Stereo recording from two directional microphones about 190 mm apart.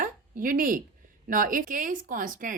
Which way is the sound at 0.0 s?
45° right (ahead or behind).